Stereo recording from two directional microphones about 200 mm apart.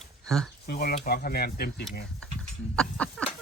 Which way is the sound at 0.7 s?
50° left (ahead or behind).